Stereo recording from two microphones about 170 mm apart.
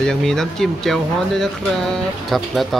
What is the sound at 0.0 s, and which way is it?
Speech, 5° left (ahead or behind).